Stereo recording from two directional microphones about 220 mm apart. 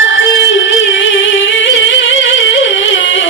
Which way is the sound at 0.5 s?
55° left (ahead or behind).